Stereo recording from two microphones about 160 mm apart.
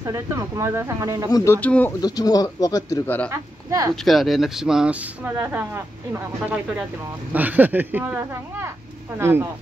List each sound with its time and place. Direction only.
0.0 s speech: 20° right (ahead or behind)
1.3 s speech: 15° left (ahead or behind)
2.0 s speech: 25° left (ahead or behind)
3.3 s speech: 20° right (ahead or behind)
3.9 s speech: centre (ahead or behind)
7.3 s speech: 10° right (ahead or behind)